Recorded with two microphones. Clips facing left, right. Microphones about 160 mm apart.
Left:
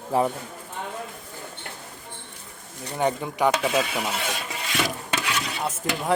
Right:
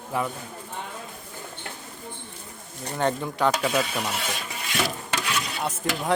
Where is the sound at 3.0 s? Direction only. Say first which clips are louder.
Left 1 dB; 15° left (ahead or behind).